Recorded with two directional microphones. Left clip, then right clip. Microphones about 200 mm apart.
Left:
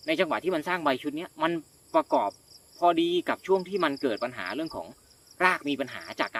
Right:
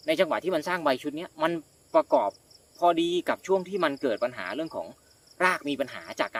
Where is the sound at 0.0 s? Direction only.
15° right (ahead or behind).